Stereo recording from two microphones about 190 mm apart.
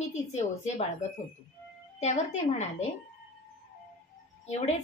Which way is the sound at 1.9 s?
35° left (ahead or behind).